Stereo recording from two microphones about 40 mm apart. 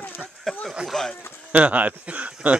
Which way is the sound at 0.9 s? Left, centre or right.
Centre.